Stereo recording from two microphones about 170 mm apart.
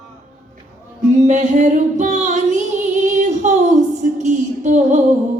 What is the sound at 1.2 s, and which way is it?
Music, 45° right (ahead or behind).